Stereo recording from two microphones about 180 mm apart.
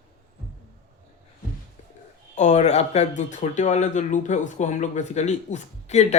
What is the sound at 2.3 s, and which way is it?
Speech, 40° left (ahead or behind).